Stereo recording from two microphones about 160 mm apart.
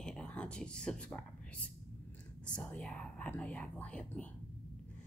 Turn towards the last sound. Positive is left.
turn(degrees=10)  # may be behind; listen again after turning